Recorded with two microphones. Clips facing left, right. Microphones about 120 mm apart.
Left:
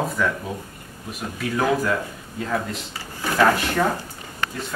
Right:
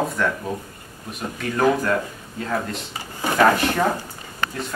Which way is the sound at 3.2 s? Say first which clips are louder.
Right 2 dB; 15° right (ahead or behind).